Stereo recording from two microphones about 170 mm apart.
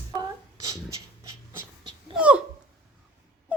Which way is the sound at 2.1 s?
5° right (ahead or behind).